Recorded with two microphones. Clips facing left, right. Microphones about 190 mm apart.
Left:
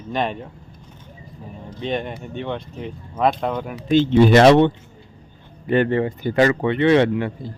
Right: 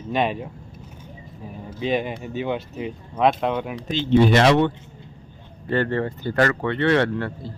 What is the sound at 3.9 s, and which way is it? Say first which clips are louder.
Speech: left 4 dB; 50° left (ahead or behind).